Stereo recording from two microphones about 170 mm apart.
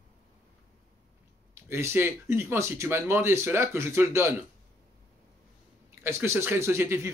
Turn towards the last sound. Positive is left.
turn(degrees=-15)  # may be behind; listen again after turning